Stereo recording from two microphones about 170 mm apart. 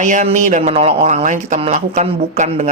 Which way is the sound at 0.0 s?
45° right (ahead or behind).